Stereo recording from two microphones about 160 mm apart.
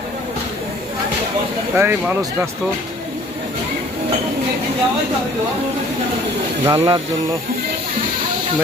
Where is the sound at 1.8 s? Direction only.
15° right (ahead or behind).